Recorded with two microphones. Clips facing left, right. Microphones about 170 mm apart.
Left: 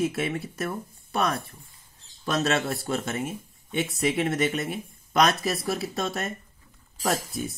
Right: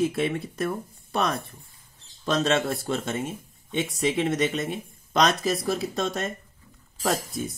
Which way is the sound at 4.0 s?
5° left (ahead or behind).